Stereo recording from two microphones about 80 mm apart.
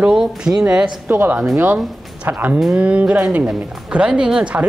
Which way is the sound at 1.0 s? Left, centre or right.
Right.